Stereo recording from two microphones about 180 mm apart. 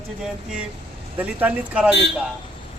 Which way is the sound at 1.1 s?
10° right (ahead or behind).